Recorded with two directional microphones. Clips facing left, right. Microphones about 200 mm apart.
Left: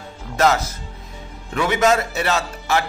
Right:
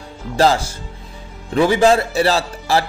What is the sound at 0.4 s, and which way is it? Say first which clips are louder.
Speech: right 3 dB; 30° right (ahead or behind).